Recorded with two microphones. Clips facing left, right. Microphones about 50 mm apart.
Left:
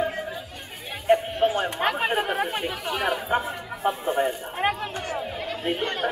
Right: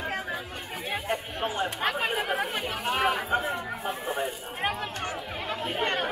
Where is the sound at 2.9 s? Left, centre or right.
Right.